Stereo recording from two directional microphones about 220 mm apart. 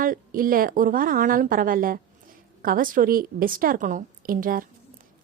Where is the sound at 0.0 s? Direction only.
40° right (ahead or behind).